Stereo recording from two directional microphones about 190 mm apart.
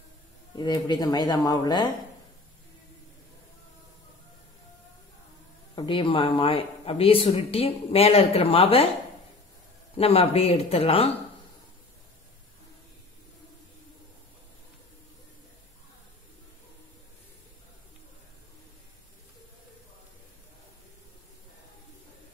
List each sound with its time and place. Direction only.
0.6 s speech: 20° left (ahead or behind)
5.8 s speech: 25° left (ahead or behind)
9.9 s speech: 30° left (ahead or behind)